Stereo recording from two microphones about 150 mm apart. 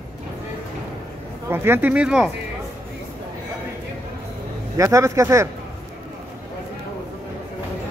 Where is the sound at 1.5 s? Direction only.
15° right (ahead or behind).